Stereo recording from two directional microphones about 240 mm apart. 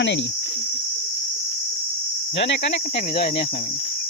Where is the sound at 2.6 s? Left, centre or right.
Left.